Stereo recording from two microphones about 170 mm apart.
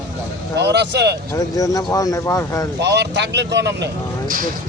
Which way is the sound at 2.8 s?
90° right.